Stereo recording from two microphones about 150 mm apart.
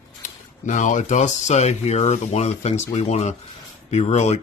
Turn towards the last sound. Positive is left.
turn(degrees=45)  # may be behind; listen again after turning